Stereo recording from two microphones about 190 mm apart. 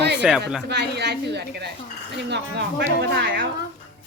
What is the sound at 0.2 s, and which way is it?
Speech, 5° right (ahead or behind).